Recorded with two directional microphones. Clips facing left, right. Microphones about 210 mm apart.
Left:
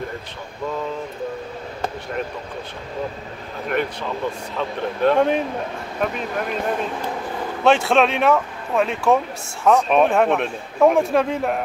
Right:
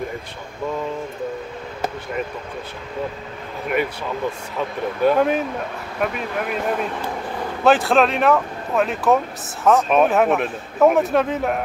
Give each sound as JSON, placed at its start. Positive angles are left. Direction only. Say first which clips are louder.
{"t": 4.6, "sound": "a man's voice", "louder": "right 1 dB", "side_deg": -5}